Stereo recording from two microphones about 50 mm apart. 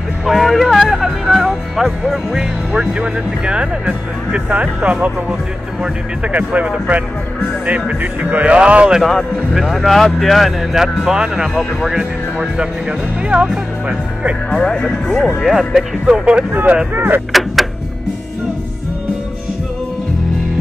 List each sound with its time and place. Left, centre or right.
0.2 s music: centre
2.7 s speech: right
8.0 s speech: right
9.0 s speech: centre
13.3 s speech: right
14.5 s speech: left
15.4 s speech: centre
16.1 s speech: centre
16.9 s speech: right
17.3 s a sound: centre